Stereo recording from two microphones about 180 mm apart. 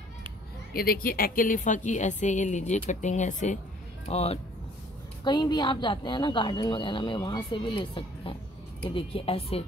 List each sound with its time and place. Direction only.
0.7 s a woman's voice: 55° left (ahead or behind); by 4.4 s 35° left (ahead or behind)
5.2 s a woman's voice: 25° left (ahead or behind)